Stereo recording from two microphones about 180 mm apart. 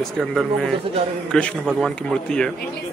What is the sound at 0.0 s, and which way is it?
Speech, centre (ahead or behind).